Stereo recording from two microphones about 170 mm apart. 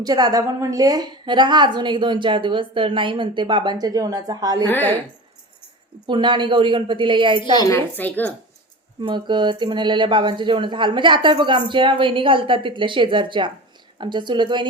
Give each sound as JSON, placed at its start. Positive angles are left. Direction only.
{"t": 0.0, "sound": "a woman's voice", "side_deg": -25}
{"t": 4.7, "sound": "a woman's voice", "side_deg": 10}
{"t": 6.1, "sound": "a woman's voice", "side_deg": -25}
{"t": 7.3, "sound": "a woman's voice", "side_deg": 25}
{"t": 9.0, "sound": "a woman's voice", "side_deg": -25}